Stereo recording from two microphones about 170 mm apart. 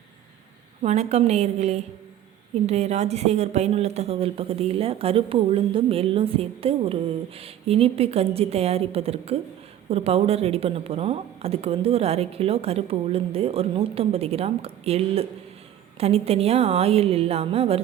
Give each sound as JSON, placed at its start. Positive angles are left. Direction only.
{"t": 0.8, "sound": "speech", "side_deg": -40}